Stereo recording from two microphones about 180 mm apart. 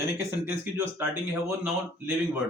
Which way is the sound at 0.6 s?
10° right (ahead or behind).